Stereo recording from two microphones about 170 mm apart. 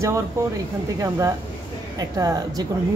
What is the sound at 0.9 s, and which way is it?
A woman's voice, 20° right (ahead or behind).